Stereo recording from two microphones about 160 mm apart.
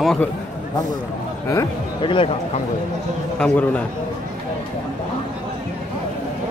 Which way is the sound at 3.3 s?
10° left (ahead or behind).